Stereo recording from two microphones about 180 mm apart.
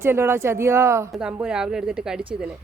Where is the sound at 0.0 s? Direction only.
15° right (ahead or behind).